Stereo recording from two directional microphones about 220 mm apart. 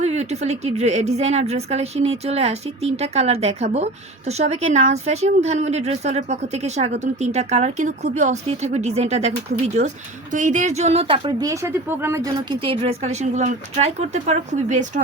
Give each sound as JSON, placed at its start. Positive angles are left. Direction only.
{"t": 0.0, "sound": "a woman's voice", "side_deg": -30}
{"t": 10.3, "sound": "speech", "side_deg": -35}